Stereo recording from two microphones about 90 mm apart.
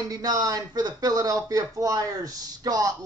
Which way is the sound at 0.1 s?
45° right (ahead or behind).